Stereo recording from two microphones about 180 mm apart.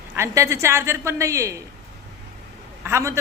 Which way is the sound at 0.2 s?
15° right (ahead or behind).